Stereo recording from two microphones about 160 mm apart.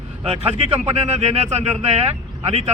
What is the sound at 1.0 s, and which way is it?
Speech, 40° right (ahead or behind).